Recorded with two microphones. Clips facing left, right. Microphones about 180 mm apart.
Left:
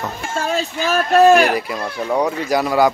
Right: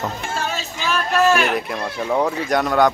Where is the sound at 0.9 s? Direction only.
40° left (ahead or behind).